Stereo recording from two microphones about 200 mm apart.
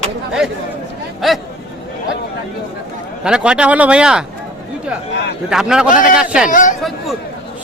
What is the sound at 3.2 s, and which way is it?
Speech, 5° right (ahead or behind).